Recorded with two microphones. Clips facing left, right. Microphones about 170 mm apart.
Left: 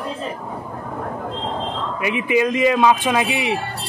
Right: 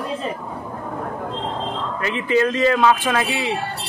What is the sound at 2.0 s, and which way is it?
Speech, 15° left (ahead or behind).